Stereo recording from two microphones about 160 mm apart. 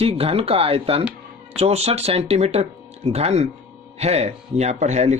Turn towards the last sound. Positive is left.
turn(degrees=-45)  # may be behind; listen again after turning